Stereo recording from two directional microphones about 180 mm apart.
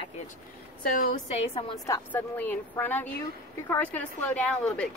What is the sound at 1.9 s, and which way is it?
A woman's voice, 10° left (ahead or behind).